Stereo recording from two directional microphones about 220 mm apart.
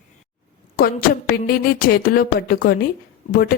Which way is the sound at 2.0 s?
40° left (ahead or behind).